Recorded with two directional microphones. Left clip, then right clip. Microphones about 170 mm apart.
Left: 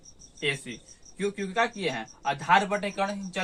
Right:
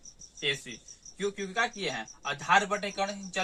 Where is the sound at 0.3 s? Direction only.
15° right (ahead or behind).